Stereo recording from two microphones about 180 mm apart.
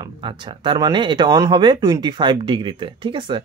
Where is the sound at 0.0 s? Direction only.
25° right (ahead or behind).